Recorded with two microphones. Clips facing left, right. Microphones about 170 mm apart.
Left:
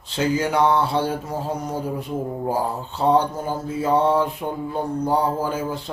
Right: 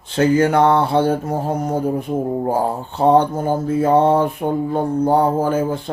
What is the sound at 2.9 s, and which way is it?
Speech, 55° right (ahead or behind).